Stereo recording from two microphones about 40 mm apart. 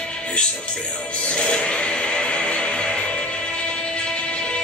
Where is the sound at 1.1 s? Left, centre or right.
Left.